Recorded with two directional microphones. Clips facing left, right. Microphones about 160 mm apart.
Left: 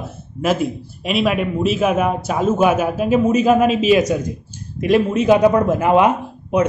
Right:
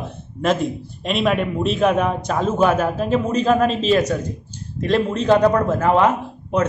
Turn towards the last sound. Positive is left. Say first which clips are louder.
# left 3 dB
turn(degrees=15)  # may be behind; listen again after turning